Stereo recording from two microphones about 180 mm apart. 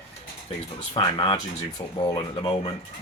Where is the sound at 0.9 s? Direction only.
30° left (ahead or behind).